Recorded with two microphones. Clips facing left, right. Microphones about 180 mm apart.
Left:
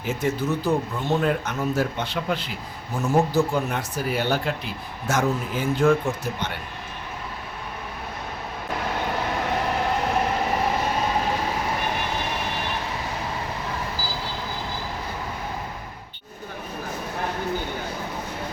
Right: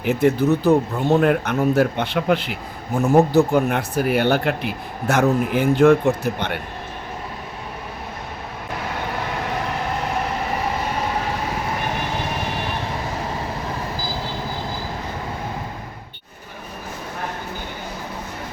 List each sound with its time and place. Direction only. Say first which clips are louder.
0.0 s speech: right 8 dB; 60° right (ahead or behind)